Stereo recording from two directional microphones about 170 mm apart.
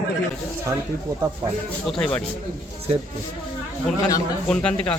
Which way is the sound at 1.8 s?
5° left (ahead or behind).